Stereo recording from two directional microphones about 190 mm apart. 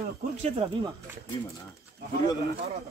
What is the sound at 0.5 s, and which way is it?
Speech, 30° right (ahead or behind).